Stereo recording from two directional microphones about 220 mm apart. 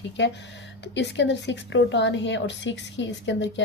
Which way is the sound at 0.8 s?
50° left (ahead or behind).